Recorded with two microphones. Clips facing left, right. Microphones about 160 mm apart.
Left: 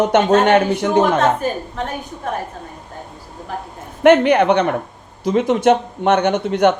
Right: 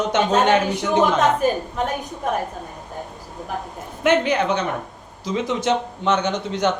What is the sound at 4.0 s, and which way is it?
Speech, 60° left (ahead or behind).